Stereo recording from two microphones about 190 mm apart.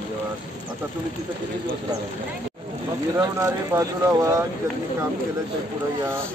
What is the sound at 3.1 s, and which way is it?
Speech, 15° right (ahead or behind).